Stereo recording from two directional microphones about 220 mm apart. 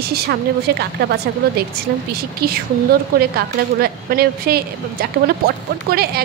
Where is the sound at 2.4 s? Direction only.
45° right (ahead or behind).